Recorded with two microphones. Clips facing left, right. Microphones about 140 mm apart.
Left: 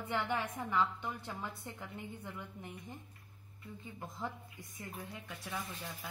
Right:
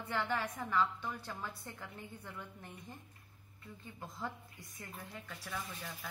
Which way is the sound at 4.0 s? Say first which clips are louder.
Left 1 dB; 15° left (ahead or behind).